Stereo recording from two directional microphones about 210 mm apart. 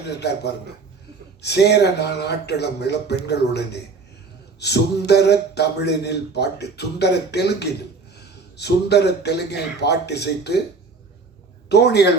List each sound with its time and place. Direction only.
0.0 s speech: 55° left (ahead or behind)
11.7 s speech: 50° left (ahead or behind)